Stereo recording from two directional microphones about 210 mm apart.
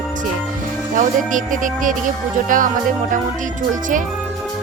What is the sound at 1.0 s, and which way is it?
Speech, 40° right (ahead or behind).